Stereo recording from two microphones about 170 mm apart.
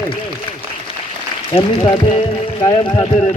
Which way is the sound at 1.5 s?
35° left (ahead or behind).